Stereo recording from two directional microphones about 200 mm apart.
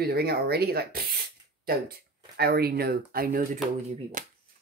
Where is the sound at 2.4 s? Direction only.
50° right (ahead or behind).